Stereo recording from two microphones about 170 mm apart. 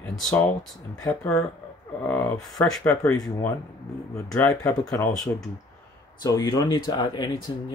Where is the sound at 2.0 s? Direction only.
10° left (ahead or behind).